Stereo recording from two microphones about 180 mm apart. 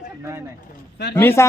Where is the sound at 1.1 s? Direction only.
15° left (ahead or behind).